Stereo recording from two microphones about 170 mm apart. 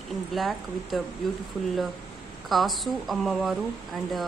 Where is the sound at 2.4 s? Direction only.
Centre (ahead or behind).